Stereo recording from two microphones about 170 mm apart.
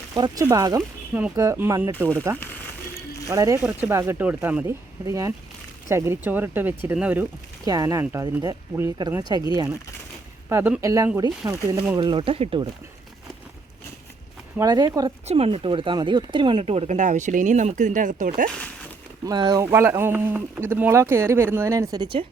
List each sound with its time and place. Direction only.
0.1 s speech: 25° right (ahead or behind)
7.6 s speech: 20° right (ahead or behind)
14.6 s speech: 20° right (ahead or behind)
15.3 s speech: 35° right (ahead or behind)
19.2 s speech: 25° right (ahead or behind)